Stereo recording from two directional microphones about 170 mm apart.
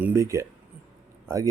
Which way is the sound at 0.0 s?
15° right (ahead or behind).